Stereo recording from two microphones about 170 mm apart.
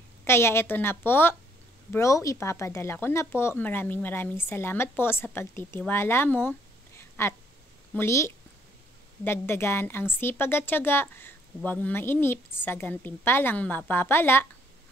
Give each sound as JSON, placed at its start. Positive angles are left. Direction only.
{"t": 0.2, "sound": "a woman's voice", "side_deg": 15}
{"t": 7.0, "sound": "a sound", "side_deg": 15}
{"t": 7.9, "sound": "a woman's voice", "side_deg": 15}